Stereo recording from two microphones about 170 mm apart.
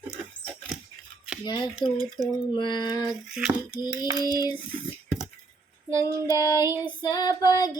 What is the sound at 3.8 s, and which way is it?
Female singing, 25° left (ahead or behind).